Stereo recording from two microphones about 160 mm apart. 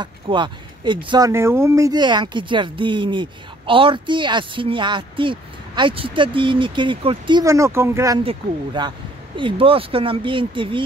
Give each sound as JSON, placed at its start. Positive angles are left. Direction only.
{"t": 0.0, "sound": "speech", "side_deg": -30}
{"t": 8.2, "sound": "speech", "side_deg": -30}